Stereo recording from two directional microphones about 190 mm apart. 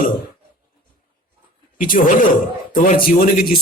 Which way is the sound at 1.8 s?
45° left (ahead or behind).